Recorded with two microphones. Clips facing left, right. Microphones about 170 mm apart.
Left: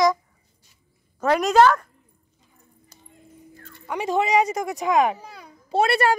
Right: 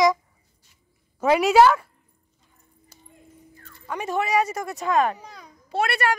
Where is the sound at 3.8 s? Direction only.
15° left (ahead or behind).